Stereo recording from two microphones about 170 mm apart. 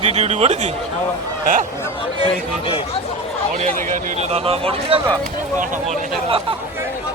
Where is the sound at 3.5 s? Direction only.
50° right (ahead or behind).